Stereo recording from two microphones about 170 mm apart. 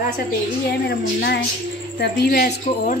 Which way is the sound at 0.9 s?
80° left.